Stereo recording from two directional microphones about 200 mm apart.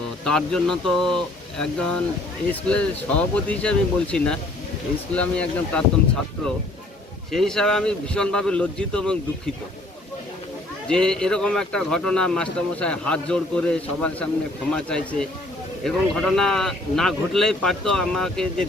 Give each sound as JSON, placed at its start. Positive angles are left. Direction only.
{"t": 0.3, "sound": "a man's voice", "side_deg": 5}
{"t": 7.3, "sound": "a man's voice", "side_deg": 0}
{"t": 10.8, "sound": "a man's voice", "side_deg": 5}